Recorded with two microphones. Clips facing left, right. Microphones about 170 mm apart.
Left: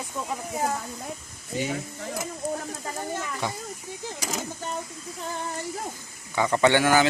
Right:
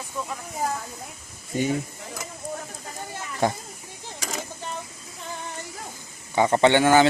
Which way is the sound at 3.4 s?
50° right (ahead or behind).